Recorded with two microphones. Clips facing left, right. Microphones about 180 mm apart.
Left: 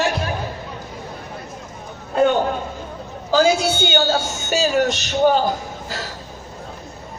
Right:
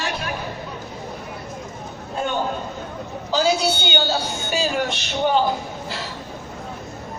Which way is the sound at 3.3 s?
50° left (ahead or behind).